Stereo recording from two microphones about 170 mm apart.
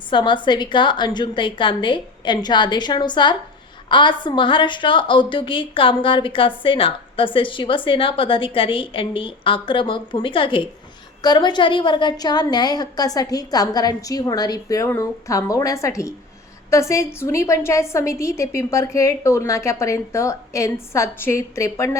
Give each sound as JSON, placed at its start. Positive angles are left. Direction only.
{"t": 0.1, "sound": "a woman's voice", "side_deg": 30}